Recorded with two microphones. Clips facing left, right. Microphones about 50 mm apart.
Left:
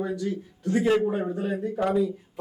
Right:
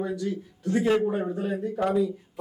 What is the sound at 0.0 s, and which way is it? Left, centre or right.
Speech, centre.